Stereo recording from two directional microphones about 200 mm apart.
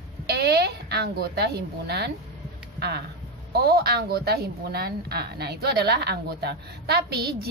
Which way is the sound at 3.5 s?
50° right (ahead or behind).